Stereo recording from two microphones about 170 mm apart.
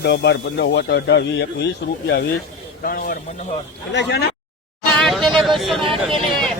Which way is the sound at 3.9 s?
90° left.